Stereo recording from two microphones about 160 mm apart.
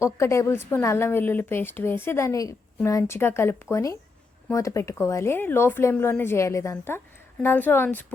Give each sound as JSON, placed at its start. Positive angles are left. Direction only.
{"t": 0.0, "sound": "a woman's voice", "side_deg": 20}